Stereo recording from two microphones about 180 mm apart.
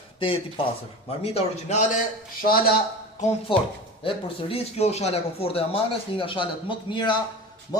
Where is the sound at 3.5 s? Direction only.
30° left (ahead or behind).